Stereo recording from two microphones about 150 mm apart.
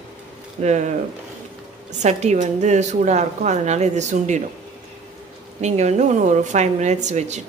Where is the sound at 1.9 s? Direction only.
50° right (ahead or behind).